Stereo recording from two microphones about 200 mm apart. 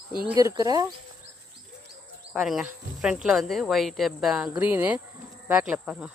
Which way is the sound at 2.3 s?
Centre (ahead or behind).